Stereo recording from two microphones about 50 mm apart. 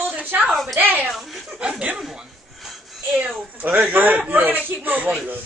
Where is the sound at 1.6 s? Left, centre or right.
Right.